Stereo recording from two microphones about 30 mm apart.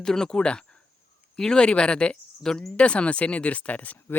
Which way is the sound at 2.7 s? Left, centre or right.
Left.